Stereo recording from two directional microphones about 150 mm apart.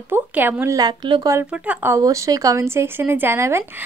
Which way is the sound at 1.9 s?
20° right (ahead or behind).